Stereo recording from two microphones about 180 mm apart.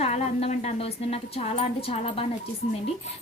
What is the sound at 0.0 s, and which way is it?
Speech, 35° left (ahead or behind).